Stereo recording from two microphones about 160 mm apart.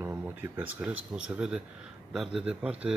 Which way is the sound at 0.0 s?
10° right (ahead or behind).